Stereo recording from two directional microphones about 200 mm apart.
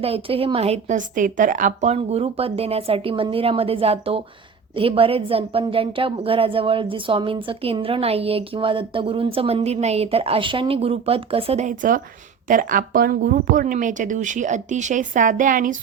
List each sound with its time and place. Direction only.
0.0 s a woman's voice: 30° right (ahead or behind)